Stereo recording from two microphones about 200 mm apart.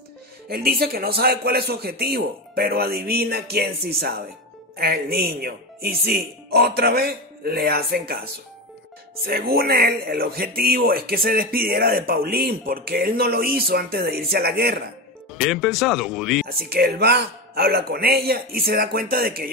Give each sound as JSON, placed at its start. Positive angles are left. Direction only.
{"t": 0.5, "sound": "speech", "side_deg": -50}
{"t": 15.5, "sound": "speech", "side_deg": 0}
{"t": 16.4, "sound": "speech", "side_deg": -50}